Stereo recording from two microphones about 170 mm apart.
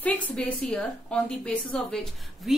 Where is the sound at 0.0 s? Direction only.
10° left (ahead or behind).